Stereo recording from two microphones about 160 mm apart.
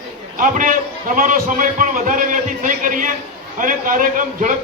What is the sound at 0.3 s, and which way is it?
A man's voice, 55° right (ahead or behind).